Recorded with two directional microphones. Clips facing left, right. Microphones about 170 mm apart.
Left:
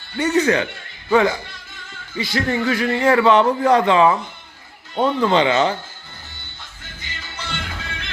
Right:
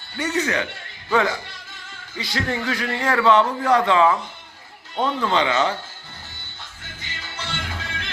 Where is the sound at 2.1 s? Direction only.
5° left (ahead or behind); by 5.7 s 25° left (ahead or behind).